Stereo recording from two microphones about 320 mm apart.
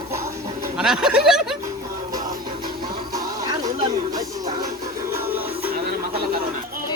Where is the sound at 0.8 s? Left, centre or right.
Centre.